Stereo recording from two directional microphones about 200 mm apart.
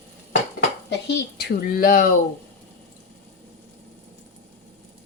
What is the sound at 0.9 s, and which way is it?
A woman's voice, 55° left (ahead or behind).